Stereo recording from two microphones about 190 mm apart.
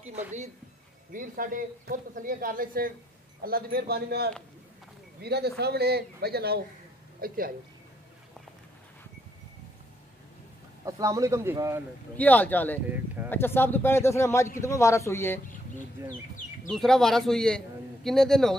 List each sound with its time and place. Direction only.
1.1 s a man's voice: 45° right (ahead or behind)
10.9 s speech: 15° right (ahead or behind)
12.2 s speech: 10° left (ahead or behind)
12.9 s speech: 10° right (ahead or behind)
13.3 s speech: 10° left (ahead or behind)
16.6 s a man's voice: centre (ahead or behind)